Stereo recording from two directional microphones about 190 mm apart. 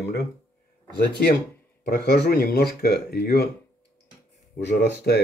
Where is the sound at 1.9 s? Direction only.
55° left (ahead or behind).